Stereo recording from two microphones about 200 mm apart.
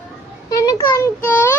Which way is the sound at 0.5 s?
20° left (ahead or behind).